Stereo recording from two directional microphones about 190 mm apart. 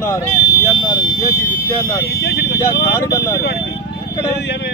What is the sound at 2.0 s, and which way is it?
Speech, 65° left (ahead or behind).